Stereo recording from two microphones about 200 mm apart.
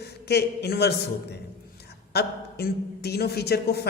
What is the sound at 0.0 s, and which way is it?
Speech, 55° left (ahead or behind).